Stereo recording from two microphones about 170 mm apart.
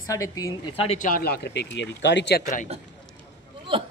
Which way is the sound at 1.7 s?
90° left.